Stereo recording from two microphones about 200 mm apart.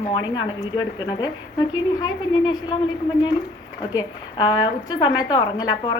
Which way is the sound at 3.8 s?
20° left (ahead or behind).